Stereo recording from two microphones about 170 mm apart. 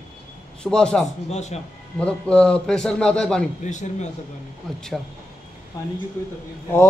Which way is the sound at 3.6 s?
45° left (ahead or behind).